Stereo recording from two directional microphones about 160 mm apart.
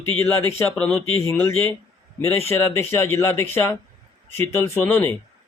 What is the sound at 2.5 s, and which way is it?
Speech, 15° left (ahead or behind).